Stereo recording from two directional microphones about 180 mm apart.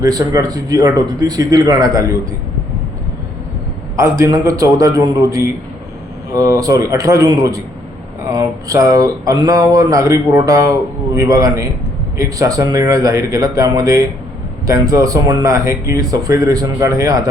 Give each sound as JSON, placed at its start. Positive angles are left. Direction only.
{"t": 0.0, "sound": "speech", "side_deg": -20}
{"t": 4.2, "sound": "speech", "side_deg": -15}